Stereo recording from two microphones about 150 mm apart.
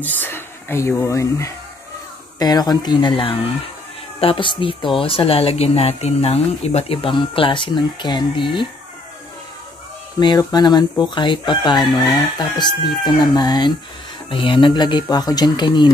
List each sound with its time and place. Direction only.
0.0 s speech: 10° left (ahead or behind); by 8.6 s 30° left (ahead or behind)
10.1 s speech: 30° left (ahead or behind)